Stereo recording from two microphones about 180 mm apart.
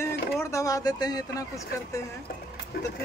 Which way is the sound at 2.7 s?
55° left (ahead or behind).